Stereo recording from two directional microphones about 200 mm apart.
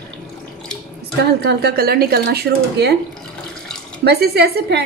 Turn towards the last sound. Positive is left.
turn(degrees=-55)  # may be behind; listen again after turning